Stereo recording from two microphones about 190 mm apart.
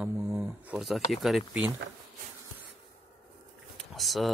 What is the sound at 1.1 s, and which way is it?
Speech, centre (ahead or behind).